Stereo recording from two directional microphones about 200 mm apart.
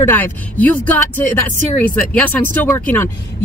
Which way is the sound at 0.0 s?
10° left (ahead or behind).